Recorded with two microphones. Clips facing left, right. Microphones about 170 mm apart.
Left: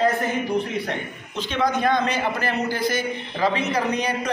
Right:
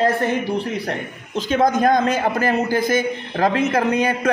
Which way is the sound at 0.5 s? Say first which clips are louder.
Right 1 dB; 40° right (ahead or behind).